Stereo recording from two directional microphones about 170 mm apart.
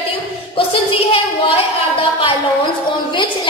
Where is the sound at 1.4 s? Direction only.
30° left (ahead or behind).